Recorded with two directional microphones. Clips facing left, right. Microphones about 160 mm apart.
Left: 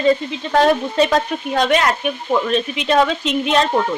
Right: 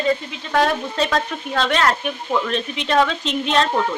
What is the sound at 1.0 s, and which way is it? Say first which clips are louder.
Speech: left 5 dB; 15° left (ahead or behind).